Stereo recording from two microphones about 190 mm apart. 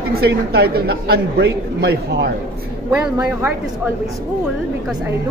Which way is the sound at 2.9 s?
5° right (ahead or behind).